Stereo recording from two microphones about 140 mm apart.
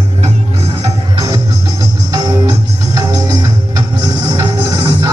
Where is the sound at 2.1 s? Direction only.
25° right (ahead or behind).